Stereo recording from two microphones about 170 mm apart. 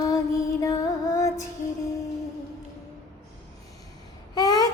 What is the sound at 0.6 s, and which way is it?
Music, 20° left (ahead or behind).